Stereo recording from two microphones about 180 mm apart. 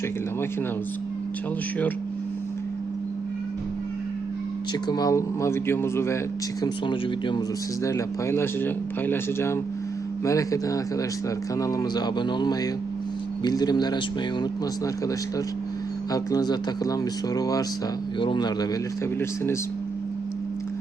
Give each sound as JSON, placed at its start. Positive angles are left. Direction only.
{"t": 4.9, "sound": "speech", "side_deg": 20}
{"t": 6.6, "sound": "speech", "side_deg": 25}
{"t": 7.9, "sound": "speech", "side_deg": 15}
{"t": 16.1, "sound": "speech", "side_deg": 20}